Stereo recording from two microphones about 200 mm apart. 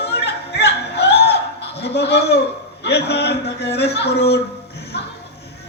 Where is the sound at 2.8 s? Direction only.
55° left (ahead or behind).